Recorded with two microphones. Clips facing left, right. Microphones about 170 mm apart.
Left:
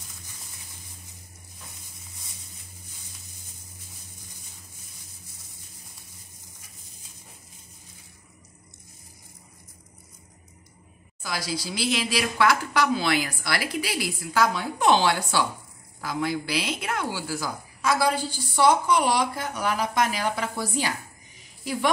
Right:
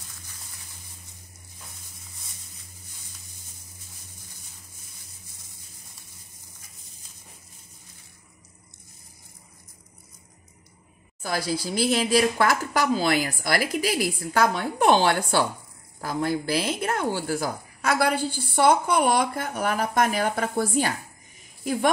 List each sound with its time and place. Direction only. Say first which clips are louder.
11.2 s a woman's voice: right 4 dB; 50° right (ahead or behind)